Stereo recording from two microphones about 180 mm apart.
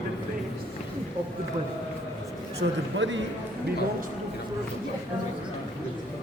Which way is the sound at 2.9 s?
90° right.